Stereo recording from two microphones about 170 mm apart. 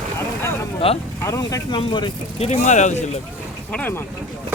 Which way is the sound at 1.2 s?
20° left (ahead or behind).